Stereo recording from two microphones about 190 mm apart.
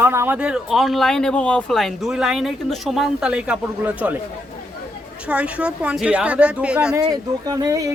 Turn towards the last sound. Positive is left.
turn(degrees=-20)  # may be behind; listen again after turning